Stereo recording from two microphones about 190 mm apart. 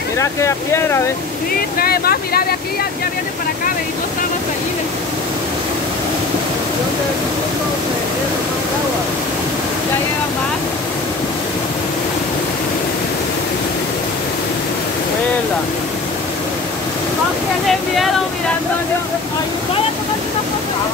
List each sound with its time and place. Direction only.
0.2 s speech: 15° left (ahead or behind)
1.8 s speech: 55° left (ahead or behind)